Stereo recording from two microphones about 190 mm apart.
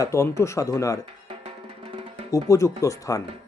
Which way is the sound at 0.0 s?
15° left (ahead or behind).